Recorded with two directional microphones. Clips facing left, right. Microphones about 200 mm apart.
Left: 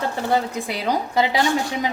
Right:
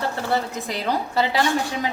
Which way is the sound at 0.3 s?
10° left (ahead or behind).